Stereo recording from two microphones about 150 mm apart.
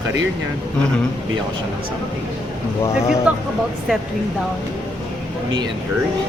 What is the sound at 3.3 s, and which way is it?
Speech, 10° right (ahead or behind).